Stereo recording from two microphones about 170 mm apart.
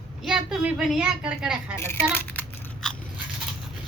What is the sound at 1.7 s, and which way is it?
Speech, 15° left (ahead or behind).